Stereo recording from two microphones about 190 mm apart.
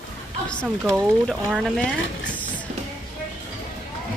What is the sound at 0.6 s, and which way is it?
Speech, centre (ahead or behind).